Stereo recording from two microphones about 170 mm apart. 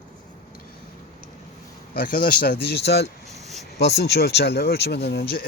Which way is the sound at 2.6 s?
75° left (ahead or behind).